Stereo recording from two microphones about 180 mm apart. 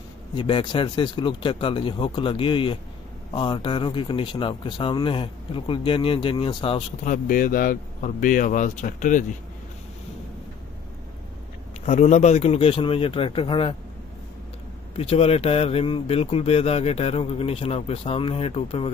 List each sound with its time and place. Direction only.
0.3 s speech: 30° left (ahead or behind)
7.1 s speech: 50° left (ahead or behind)
11.8 s a man's voice: 40° left (ahead or behind)
15.0 s a man's voice: 35° left (ahead or behind)